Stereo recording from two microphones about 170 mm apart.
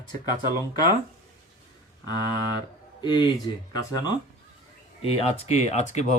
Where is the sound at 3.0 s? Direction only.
25° left (ahead or behind).